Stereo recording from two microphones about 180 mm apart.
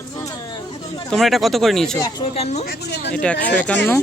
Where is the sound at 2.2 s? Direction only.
35° left (ahead or behind).